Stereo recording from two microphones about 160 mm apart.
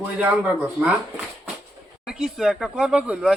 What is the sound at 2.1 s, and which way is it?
Speech, 5° right (ahead or behind).